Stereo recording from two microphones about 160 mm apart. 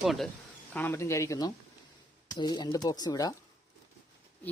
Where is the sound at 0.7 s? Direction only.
10° left (ahead or behind).